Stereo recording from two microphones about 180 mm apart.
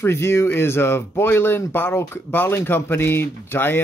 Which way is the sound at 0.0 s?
15° left (ahead or behind).